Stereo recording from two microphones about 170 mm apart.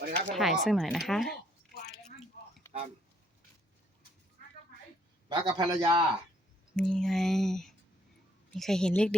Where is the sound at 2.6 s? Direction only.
15° left (ahead or behind).